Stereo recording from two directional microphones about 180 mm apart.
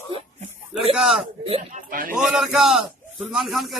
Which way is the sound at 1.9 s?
50° right (ahead or behind).